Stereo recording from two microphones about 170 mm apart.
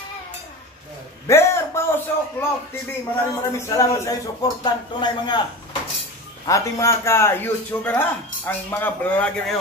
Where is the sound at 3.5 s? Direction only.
20° left (ahead or behind).